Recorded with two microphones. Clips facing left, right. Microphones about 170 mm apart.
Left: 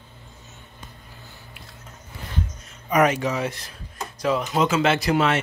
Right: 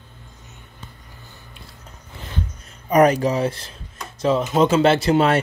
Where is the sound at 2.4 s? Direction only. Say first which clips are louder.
Right 1 dB; 35° right (ahead or behind).